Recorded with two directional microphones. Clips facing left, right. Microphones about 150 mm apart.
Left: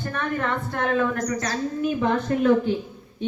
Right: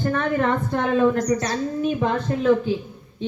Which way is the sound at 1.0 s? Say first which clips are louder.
Right 5 dB; 25° right (ahead or behind).